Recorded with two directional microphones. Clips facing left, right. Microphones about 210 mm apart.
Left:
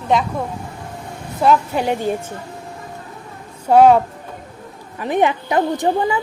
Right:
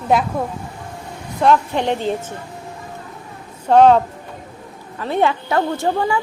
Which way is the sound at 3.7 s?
10° left (ahead or behind).